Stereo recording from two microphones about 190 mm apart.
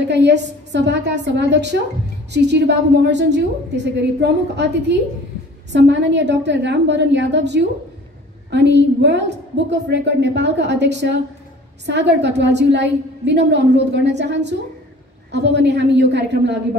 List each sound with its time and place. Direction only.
0.1 s a woman's voice: 65° right (ahead or behind)